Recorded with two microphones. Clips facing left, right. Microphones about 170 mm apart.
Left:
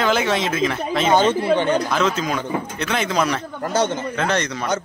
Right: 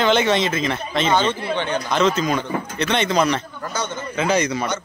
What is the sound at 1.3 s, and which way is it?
Speech, 45° left (ahead or behind).